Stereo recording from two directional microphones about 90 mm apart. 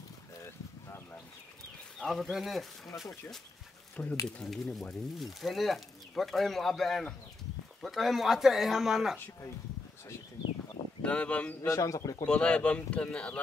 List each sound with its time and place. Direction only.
2.0 s speech: centre (ahead or behind)
4.0 s speech: 20° left (ahead or behind)
4.4 s speech: 5° left (ahead or behind)
11.0 s speech: 15° left (ahead or behind)
11.6 s a man's voice: 35° left (ahead or behind)
12.3 s speech: 10° left (ahead or behind)